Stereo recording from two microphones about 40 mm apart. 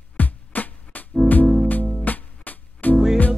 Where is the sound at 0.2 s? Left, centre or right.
Left.